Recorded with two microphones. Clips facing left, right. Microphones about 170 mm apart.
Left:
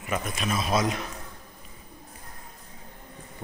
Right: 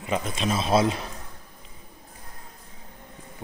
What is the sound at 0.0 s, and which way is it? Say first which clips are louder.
Speech: right 3 dB; 25° right (ahead or behind).